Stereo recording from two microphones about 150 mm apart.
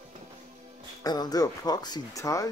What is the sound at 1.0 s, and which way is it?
Speech, 25° left (ahead or behind).